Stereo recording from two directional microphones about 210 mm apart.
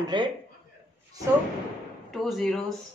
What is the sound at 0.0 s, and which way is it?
Speech, 20° right (ahead or behind).